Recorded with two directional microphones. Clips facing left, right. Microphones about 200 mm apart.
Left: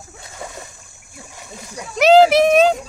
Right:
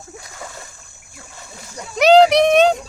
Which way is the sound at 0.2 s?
25° left (ahead or behind).